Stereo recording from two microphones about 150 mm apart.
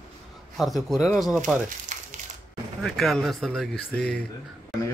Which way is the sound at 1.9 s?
55° right (ahead or behind).